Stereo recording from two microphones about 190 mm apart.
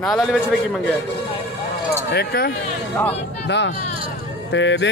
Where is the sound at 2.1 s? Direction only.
55° left (ahead or behind).